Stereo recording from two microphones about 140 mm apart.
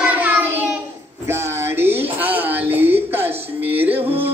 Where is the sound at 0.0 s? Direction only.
10° right (ahead or behind).